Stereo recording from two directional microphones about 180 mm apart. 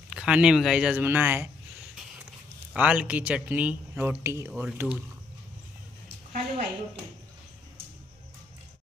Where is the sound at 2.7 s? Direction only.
5° right (ahead or behind).